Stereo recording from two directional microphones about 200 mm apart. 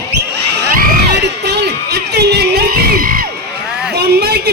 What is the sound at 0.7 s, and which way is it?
Crowd, 50° right (ahead or behind).